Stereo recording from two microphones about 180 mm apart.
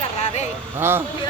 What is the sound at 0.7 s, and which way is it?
Speech, 10° right (ahead or behind).